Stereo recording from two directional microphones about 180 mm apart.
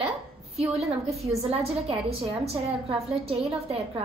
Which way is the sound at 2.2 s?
35° right (ahead or behind).